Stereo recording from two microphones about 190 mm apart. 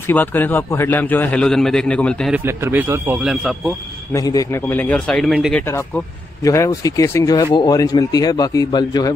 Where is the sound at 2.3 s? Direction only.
10° right (ahead or behind).